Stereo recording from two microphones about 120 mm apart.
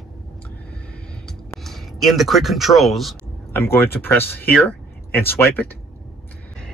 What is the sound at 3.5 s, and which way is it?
Speech, 20° left (ahead or behind).